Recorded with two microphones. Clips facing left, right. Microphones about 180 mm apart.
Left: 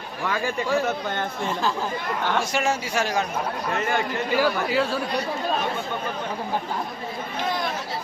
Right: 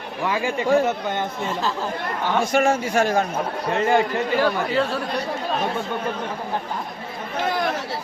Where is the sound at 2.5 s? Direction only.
55° right (ahead or behind).